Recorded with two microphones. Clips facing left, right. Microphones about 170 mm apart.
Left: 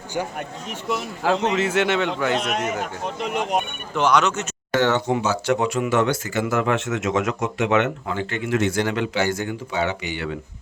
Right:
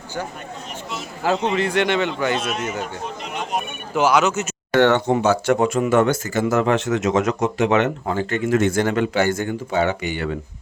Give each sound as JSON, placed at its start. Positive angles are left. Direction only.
{"t": 1.2, "sound": "a man's voice", "side_deg": 0}
{"t": 2.3, "sound": "a man's voice", "side_deg": 70}
{"t": 3.2, "sound": "speech", "side_deg": 60}
{"t": 3.9, "sound": "a man's voice", "side_deg": -5}
{"t": 4.8, "sound": "speech", "side_deg": -60}